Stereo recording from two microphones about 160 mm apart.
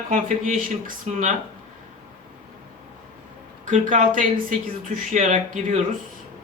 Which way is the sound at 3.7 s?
55° right (ahead or behind).